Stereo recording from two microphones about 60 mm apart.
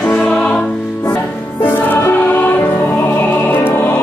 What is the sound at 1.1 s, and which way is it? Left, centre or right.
Music, left.